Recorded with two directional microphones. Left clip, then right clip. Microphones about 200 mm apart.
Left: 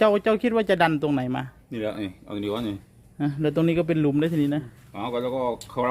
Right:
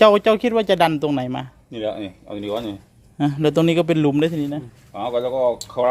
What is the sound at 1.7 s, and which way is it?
Speech, 60° left (ahead or behind).